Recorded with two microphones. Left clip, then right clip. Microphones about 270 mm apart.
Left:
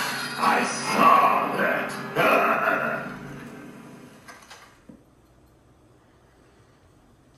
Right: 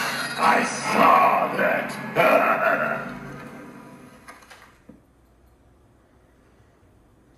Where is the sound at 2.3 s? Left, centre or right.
Right.